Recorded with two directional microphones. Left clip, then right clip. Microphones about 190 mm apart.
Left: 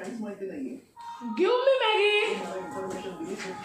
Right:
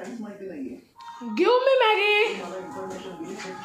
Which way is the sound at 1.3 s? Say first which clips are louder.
Right 4 dB; 50° right (ahead or behind).